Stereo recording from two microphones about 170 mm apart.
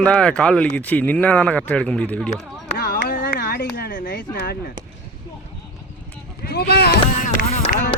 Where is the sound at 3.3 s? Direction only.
65° left (ahead or behind).